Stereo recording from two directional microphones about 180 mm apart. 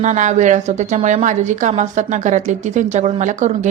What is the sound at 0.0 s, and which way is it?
A woman's voice, 40° right (ahead or behind).